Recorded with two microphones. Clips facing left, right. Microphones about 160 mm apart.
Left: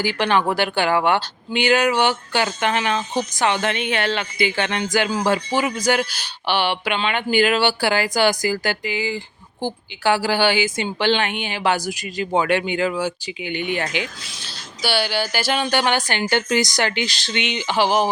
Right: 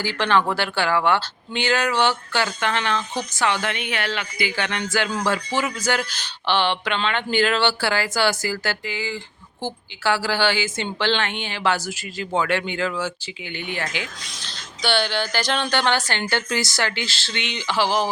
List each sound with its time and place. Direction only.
0.0 s speech: 15° left (ahead or behind)
14.3 s speech: 5° left (ahead or behind)